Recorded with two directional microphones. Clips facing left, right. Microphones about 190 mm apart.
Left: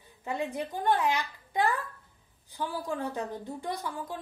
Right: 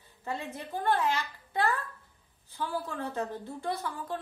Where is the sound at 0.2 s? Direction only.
15° left (ahead or behind).